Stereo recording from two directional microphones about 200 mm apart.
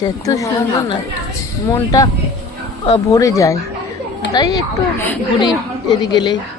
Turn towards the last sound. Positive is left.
turn(degrees=20)  # may be behind; listen again after turning